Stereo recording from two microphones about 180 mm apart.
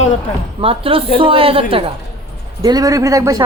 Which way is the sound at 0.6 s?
30° right (ahead or behind).